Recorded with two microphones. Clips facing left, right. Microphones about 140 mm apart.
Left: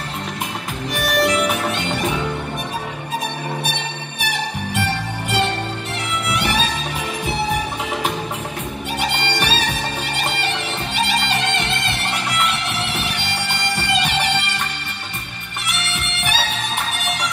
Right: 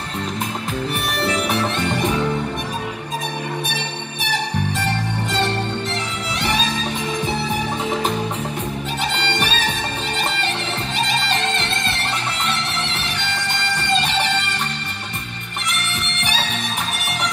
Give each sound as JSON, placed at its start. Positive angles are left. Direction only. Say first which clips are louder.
{"t": 1.1, "sound": "music", "louder": "left 6 dB", "side_deg": -30}
{"t": 11.4, "sound": "music", "louder": "left 1 dB", "side_deg": -35}
{"t": 14.0, "sound": "music", "louder": "even", "side_deg": -35}